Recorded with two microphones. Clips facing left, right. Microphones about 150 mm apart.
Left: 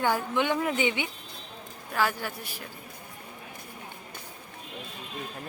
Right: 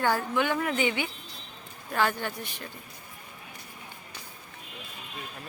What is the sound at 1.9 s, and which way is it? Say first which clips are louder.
Speech: right 1 dB; 5° left (ahead or behind).